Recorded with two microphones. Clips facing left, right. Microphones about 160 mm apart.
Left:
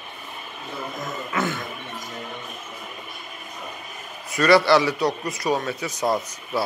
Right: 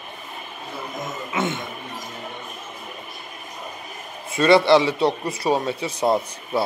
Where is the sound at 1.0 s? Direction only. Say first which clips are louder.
Right 1 dB; 25° right (ahead or behind).